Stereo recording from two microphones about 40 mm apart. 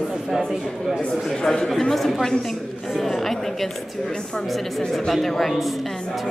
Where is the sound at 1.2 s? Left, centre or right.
Centre.